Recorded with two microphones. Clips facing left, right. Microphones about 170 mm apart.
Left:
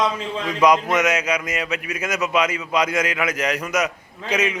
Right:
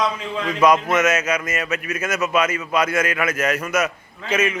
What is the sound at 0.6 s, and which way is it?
Speech, 15° left (ahead or behind).